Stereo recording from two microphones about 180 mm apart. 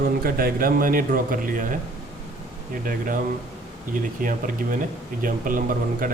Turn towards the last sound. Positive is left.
turn(degrees=-50)  # may be behind; listen again after turning